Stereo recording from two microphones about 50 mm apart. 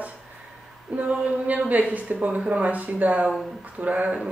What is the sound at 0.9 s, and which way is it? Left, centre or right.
Speech, right.